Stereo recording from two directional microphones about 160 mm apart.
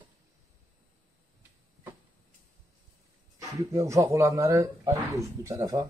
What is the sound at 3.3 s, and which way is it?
Speech, 20° right (ahead or behind).